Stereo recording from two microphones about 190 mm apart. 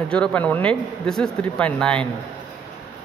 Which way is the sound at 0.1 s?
5° left (ahead or behind).